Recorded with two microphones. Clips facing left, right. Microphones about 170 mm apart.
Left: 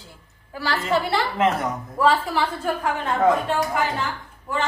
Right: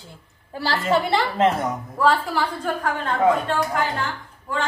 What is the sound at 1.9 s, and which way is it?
A woman's voice, 5° left (ahead or behind).